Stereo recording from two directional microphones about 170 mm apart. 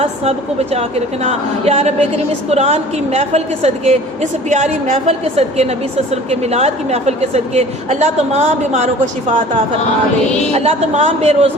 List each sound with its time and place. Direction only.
0.0 s a woman's voice: 35° right (ahead or behind)
10.5 s a woman's voice: 40° right (ahead or behind)